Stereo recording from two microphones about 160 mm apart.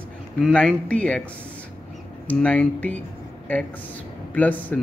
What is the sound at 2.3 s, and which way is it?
Speech, 5° left (ahead or behind).